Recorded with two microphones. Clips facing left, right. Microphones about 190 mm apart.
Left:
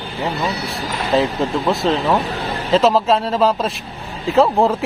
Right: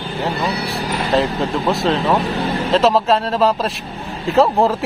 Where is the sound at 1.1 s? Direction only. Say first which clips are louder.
Left 1 dB; centre (ahead or behind).